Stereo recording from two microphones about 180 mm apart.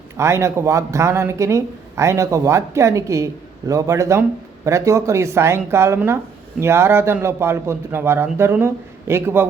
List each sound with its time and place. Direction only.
0.2 s speech: 15° right (ahead or behind)